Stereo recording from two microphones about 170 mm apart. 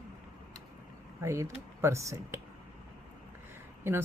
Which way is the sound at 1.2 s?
15° right (ahead or behind).